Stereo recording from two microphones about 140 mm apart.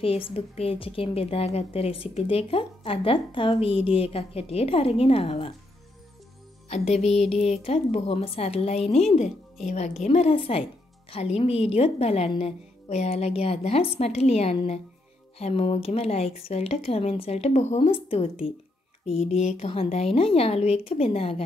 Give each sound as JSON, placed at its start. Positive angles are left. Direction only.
{"t": 0.0, "sound": "a woman's voice", "side_deg": 45}
{"t": 6.7, "sound": "a woman's voice", "side_deg": 50}
{"t": 9.7, "sound": "a woman's voice", "side_deg": 60}
{"t": 10.0, "sound": "a woman's voice", "side_deg": 45}